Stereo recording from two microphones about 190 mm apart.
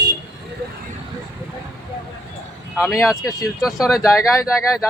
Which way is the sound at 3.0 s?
Centre (ahead or behind).